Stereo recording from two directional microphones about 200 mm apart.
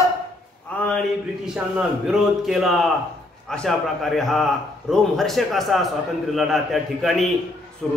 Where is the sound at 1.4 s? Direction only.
5° right (ahead or behind).